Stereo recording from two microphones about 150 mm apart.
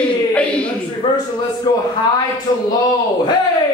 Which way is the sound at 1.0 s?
35° left (ahead or behind).